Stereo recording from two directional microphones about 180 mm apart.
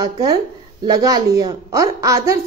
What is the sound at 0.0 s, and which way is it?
A woman's voice, 20° right (ahead or behind).